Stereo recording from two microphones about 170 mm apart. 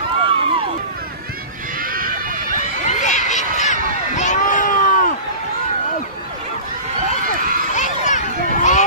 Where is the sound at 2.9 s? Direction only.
45° left (ahead or behind).